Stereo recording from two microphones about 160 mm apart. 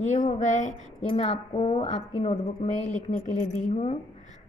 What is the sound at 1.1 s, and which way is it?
Speech, 40° left (ahead or behind).